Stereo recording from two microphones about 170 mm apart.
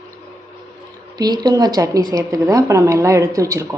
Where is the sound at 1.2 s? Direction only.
25° right (ahead or behind).